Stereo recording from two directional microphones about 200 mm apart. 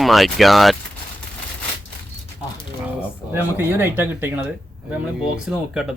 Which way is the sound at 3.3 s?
10° right (ahead or behind).